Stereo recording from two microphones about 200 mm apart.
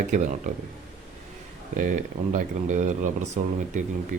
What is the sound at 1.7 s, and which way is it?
Speech, 40° right (ahead or behind).